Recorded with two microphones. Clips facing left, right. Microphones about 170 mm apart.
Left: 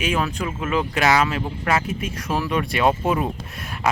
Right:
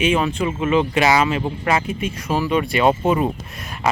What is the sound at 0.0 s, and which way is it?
Speech, centre (ahead or behind).